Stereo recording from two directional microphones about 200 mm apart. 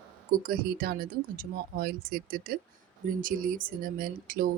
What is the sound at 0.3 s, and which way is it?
Speech, 45° right (ahead or behind).